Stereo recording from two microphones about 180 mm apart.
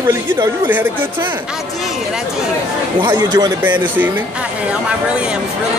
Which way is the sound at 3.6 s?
10° right (ahead or behind).